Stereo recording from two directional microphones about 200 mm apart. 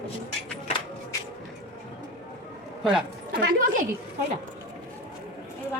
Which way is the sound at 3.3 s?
50° right (ahead or behind).